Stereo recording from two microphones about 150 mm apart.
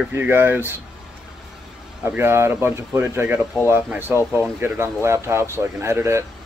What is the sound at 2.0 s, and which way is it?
Speech, 15° right (ahead or behind).